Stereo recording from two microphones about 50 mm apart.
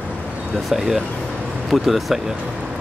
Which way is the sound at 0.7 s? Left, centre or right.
Centre.